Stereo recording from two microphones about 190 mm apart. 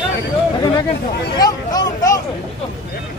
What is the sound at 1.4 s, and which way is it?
Speech, 20° left (ahead or behind).